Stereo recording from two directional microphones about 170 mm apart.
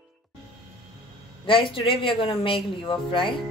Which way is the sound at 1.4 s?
30° left (ahead or behind).